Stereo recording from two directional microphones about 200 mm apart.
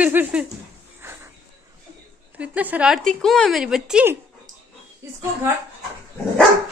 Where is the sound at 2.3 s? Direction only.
5° right (ahead or behind).